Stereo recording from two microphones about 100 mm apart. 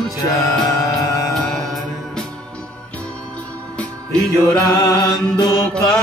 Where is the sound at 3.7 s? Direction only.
10° left (ahead or behind).